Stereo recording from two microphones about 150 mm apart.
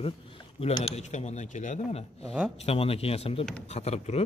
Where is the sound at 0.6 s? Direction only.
45° left (ahead or behind).